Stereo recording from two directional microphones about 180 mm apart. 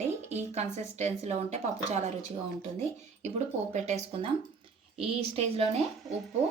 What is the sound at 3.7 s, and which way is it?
Speech, 40° right (ahead or behind).